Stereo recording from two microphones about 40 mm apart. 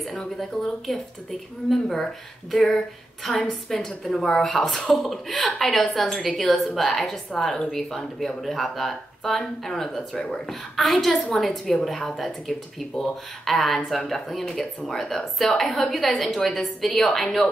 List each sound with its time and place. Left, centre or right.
0.4 s a woman's voice: centre
10.1 s speech: left
10.5 s a woman's voice: centre